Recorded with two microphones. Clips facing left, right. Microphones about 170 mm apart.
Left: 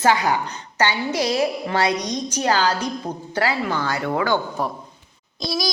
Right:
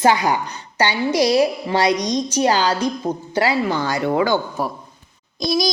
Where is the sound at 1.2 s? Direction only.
35° right (ahead or behind).